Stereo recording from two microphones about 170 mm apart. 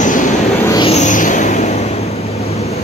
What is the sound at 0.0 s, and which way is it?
Vehicle, 50° left (ahead or behind).